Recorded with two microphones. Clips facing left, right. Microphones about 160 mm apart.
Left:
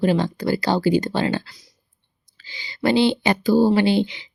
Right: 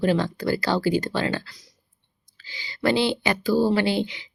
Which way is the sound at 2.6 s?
20° left (ahead or behind).